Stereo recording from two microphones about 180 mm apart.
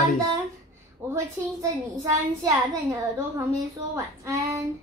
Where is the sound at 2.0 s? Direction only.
15° right (ahead or behind).